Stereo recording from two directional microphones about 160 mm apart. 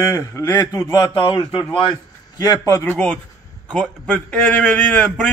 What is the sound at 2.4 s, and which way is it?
Speech, 20° left (ahead or behind).